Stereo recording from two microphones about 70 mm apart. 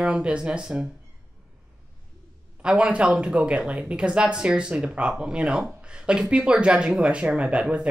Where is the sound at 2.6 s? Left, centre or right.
Centre.